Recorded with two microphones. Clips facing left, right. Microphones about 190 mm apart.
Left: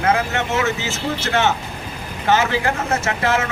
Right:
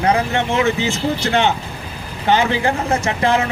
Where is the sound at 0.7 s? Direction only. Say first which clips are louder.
Right 6 dB; 15° right (ahead or behind).